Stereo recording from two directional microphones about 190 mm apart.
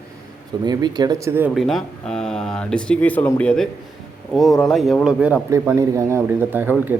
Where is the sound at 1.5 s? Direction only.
Centre (ahead or behind).